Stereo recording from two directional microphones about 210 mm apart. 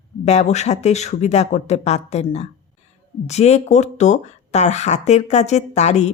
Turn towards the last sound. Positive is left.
turn(degrees=35)  # may be behind; listen again after turning